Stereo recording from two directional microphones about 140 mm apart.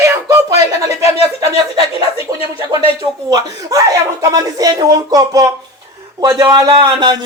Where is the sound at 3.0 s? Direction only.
25° right (ahead or behind).